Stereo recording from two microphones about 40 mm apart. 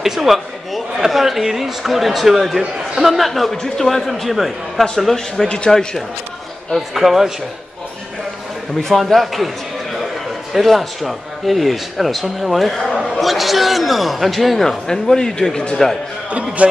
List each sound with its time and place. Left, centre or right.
0.0 s a man's voice: centre
6.7 s speech: centre
8.9 s speech: centre
10.5 s speech: centre
16.3 s a man's voice: right